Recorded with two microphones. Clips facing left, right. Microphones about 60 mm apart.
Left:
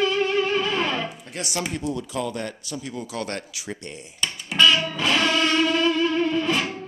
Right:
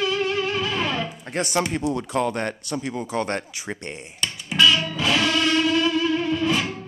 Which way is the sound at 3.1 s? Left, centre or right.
Right.